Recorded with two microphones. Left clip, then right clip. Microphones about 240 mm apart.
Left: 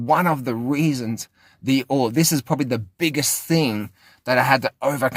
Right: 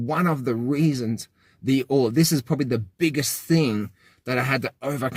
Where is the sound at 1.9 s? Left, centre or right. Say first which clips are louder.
Even; left.